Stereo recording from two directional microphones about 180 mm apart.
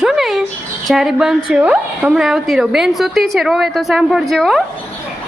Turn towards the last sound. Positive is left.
turn(degrees=0)  # may be behind; listen again after turning